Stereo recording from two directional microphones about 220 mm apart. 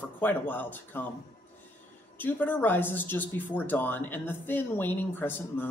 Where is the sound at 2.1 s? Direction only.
10° left (ahead or behind).